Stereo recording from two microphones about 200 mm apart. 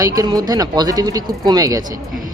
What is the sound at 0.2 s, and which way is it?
Speech, 20° right (ahead or behind).